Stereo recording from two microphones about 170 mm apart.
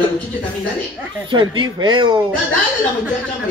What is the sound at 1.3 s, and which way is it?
Speech, 30° right (ahead or behind).